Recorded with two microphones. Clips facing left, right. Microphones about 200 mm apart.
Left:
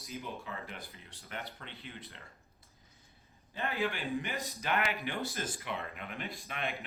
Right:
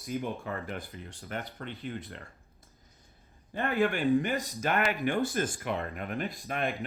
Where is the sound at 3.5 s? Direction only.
55° right (ahead or behind).